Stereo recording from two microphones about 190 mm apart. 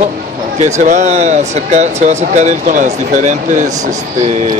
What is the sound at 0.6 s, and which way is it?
Speech, 40° right (ahead or behind).